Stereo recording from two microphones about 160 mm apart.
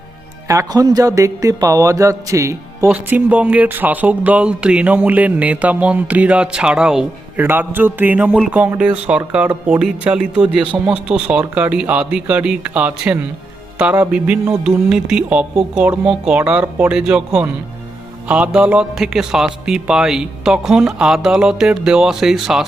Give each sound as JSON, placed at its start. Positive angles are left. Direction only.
{"t": 0.4, "sound": "mantra", "side_deg": -20}
{"t": 2.9, "sound": "a man's voice", "side_deg": -10}